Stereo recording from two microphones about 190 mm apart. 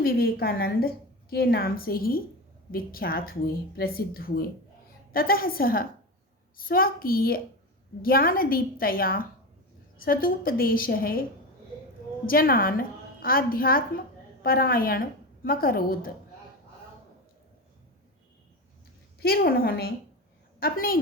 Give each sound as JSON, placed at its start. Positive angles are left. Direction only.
{"t": 0.0, "sound": "a woman's voice", "side_deg": 50}
{"t": 12.2, "sound": "a woman's voice", "side_deg": 50}
{"t": 19.2, "sound": "a woman's voice", "side_deg": 55}